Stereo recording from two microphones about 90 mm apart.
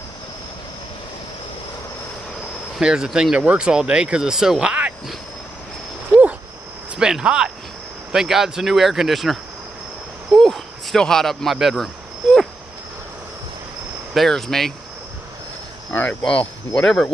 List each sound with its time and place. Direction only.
2.8 s speech: 10° right (ahead or behind)
7.0 s speech: 10° right (ahead or behind)
14.1 s speech: 5° left (ahead or behind)
15.9 s speech: 15° left (ahead or behind)